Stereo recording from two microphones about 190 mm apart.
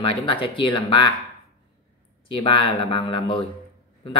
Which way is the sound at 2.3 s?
30° left (ahead or behind).